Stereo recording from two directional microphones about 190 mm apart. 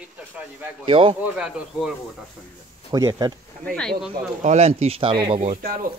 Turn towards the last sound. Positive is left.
turn(degrees=-55)  # may be behind; listen again after turning